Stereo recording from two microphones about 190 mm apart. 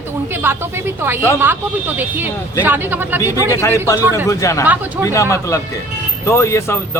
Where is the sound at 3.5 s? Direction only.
15° left (ahead or behind).